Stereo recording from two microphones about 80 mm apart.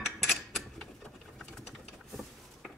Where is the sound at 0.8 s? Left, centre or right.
Centre.